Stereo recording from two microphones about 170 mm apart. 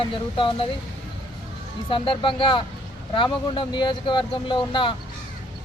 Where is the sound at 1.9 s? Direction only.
30° left (ahead or behind).